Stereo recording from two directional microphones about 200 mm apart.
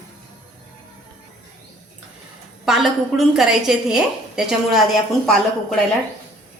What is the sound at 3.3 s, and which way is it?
A woman's voice, 5° right (ahead or behind).